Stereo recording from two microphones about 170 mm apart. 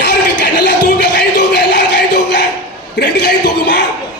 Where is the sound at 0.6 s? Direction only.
75° left (ahead or behind).